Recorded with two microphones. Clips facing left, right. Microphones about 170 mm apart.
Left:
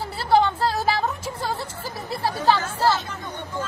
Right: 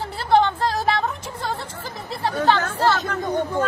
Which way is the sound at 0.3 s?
5° left (ahead or behind).